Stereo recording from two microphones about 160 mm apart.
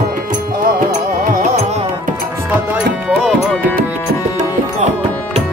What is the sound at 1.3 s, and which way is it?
Music, 50° right (ahead or behind).